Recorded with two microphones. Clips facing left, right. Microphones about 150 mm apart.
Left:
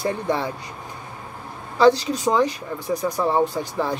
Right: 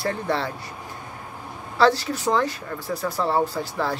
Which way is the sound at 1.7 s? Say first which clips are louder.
Left 3 dB; 20° left (ahead or behind).